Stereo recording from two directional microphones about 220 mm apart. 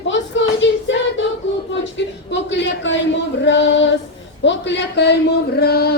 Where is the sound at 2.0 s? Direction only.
55° left (ahead or behind).